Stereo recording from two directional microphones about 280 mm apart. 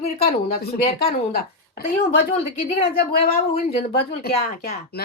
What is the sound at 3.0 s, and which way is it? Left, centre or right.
Speech, left.